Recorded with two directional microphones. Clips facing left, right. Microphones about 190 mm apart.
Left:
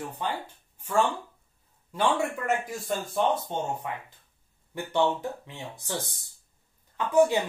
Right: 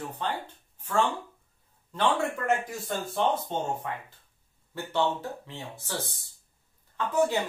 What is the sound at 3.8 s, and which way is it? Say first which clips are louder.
Speech: even; 15° left (ahead or behind).